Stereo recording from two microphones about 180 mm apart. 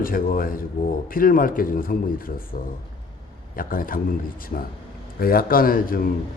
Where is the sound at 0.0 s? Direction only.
50° left (ahead or behind).